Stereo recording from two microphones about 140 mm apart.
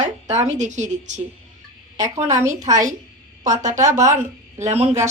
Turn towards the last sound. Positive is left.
turn(degrees=-50)  # may be behind; listen again after turning